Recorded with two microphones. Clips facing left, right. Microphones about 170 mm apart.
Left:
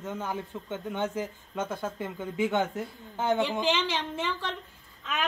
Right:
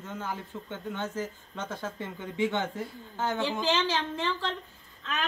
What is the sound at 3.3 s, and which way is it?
Speech, 20° left (ahead or behind).